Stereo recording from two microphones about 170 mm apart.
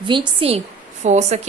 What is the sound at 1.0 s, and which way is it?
Speech, 40° right (ahead or behind).